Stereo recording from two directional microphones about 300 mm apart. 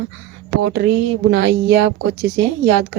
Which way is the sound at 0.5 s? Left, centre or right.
Right.